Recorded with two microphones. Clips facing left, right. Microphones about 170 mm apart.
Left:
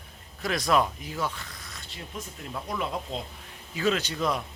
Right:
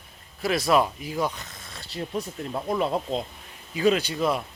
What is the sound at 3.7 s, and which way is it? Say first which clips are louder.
Speech: right 5 dB; 15° right (ahead or behind).